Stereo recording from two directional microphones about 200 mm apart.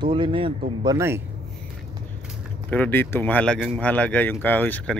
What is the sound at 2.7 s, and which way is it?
Speech, 10° left (ahead or behind).